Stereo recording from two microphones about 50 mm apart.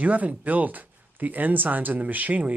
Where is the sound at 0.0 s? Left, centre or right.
Right.